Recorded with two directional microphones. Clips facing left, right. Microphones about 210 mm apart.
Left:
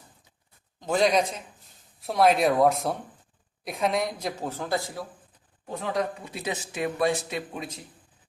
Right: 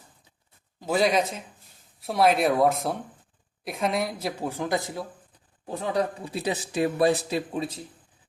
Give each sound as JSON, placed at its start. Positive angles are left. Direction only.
{"t": 0.8, "sound": "a man's voice", "side_deg": -5}
{"t": 5.9, "sound": "a man's voice", "side_deg": -30}